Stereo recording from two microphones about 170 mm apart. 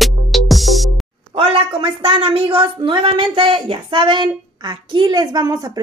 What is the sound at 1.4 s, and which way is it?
A woman's voice, 30° right (ahead or behind).